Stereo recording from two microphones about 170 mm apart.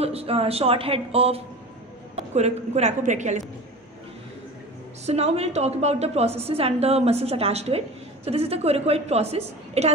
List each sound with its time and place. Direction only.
0.0 s a woman's voice: 35° right (ahead or behind)
5.0 s a woman's voice: 35° right (ahead or behind)